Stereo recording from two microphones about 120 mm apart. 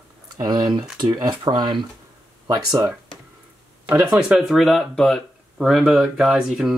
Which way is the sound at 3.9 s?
10° right (ahead or behind).